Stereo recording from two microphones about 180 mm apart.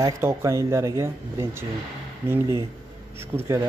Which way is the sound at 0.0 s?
15° right (ahead or behind).